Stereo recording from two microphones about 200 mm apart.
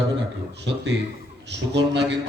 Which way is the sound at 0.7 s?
60° right (ahead or behind).